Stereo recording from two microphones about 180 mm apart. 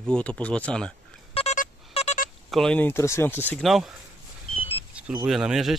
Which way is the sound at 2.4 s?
Centre (ahead or behind).